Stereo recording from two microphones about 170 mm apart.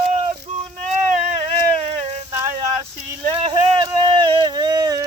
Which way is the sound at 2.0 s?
40° right (ahead or behind).